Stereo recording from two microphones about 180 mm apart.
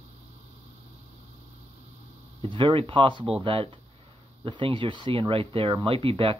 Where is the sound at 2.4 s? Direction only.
30° right (ahead or behind).